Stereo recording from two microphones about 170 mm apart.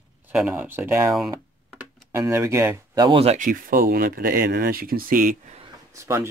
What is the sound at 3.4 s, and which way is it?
Speech, 55° right (ahead or behind).